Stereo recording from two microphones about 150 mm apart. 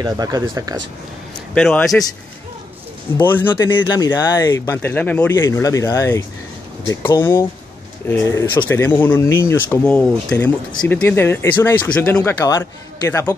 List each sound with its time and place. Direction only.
0.0 s speech: 25° right (ahead or behind)
1.5 s a man's voice: 10° left (ahead or behind)
3.2 s speech: 15° left (ahead or behind)